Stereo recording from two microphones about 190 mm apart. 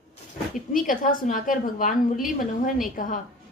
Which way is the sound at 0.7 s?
45° left (ahead or behind).